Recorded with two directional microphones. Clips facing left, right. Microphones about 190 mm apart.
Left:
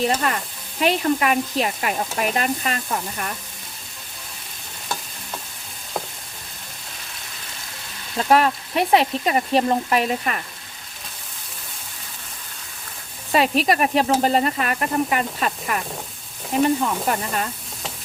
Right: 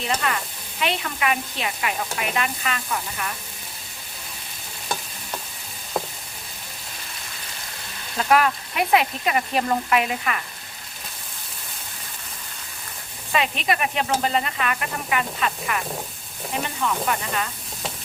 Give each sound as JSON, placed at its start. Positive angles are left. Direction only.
{"t": 0.0, "sound": "speech", "side_deg": 40}
{"t": 8.3, "sound": "speech", "side_deg": 30}
{"t": 13.3, "sound": "speech", "side_deg": 40}